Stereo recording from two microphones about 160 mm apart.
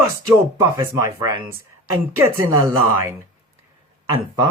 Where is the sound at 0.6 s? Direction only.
20° right (ahead or behind).